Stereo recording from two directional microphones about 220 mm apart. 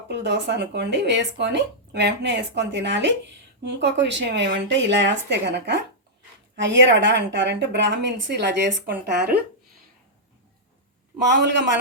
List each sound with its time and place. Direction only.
0.1 s speech: 55° right (ahead or behind)
11.3 s speech: 50° right (ahead or behind)